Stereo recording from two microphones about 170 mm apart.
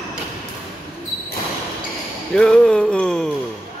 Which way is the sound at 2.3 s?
5° left (ahead or behind).